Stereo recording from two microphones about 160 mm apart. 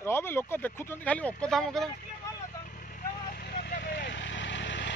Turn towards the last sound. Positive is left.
turn(degrees=90)